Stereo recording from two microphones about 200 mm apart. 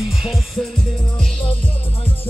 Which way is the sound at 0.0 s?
Centre (ahead or behind).